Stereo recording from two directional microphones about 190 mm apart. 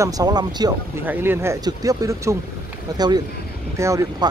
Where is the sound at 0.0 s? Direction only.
20° right (ahead or behind).